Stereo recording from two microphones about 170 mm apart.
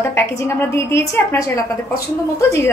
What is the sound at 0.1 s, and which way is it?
A woman's voice, 15° left (ahead or behind).